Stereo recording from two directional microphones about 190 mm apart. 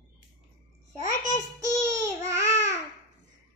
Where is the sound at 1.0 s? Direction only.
15° right (ahead or behind).